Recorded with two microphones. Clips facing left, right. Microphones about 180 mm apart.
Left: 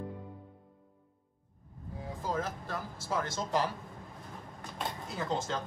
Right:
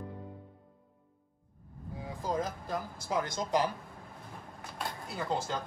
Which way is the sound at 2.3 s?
15° right (ahead or behind).